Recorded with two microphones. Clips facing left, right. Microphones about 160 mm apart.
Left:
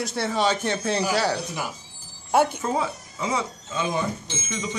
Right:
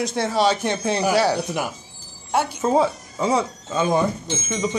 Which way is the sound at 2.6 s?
30° right (ahead or behind).